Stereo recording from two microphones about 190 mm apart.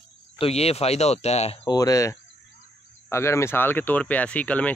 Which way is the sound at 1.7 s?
20° left (ahead or behind).